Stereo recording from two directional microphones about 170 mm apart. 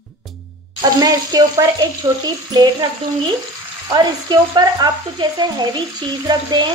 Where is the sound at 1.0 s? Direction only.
20° right (ahead or behind).